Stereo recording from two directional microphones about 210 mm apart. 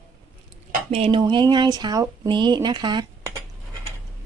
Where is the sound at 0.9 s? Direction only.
25° right (ahead or behind).